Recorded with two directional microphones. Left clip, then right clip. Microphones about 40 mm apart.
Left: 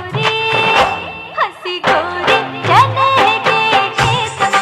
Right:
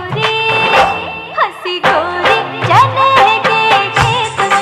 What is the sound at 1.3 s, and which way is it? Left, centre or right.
Music, right.